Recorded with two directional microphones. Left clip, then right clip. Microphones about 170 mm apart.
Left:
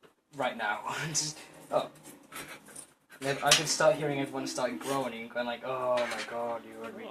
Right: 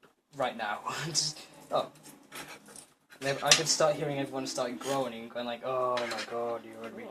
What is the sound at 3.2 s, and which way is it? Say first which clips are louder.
Speech: even; 30° right (ahead or behind).